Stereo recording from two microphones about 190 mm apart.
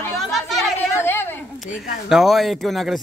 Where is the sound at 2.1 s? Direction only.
Centre (ahead or behind).